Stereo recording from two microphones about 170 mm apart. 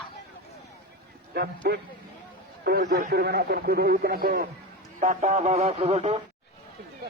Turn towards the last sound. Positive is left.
turn(degrees=-40)  # may be behind; listen again after turning